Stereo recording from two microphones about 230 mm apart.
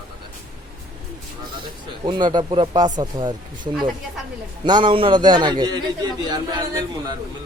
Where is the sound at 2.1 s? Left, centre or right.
Centre.